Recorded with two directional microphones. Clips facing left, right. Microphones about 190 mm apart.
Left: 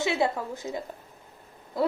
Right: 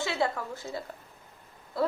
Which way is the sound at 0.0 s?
20° left (ahead or behind).